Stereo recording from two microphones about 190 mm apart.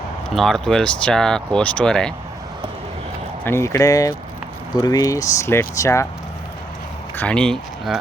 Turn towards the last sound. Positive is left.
turn(degrees=5)  # may be behind; listen again after turning